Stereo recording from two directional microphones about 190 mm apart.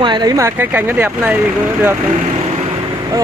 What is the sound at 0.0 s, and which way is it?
Speech, 20° right (ahead or behind).